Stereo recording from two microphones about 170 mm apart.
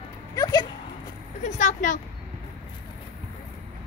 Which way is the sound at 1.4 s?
45° left (ahead or behind).